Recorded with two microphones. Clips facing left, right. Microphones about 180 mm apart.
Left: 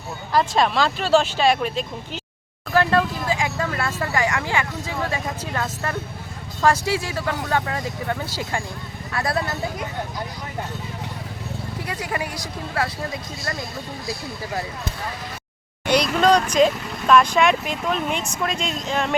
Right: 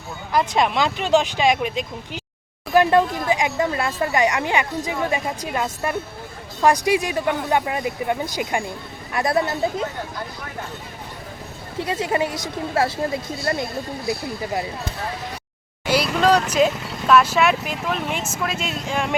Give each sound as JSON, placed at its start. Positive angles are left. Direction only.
{"t": 0.3, "sound": "speech", "side_deg": -20}
{"t": 11.8, "sound": "speech", "side_deg": -25}
{"t": 15.9, "sound": "speech", "side_deg": -5}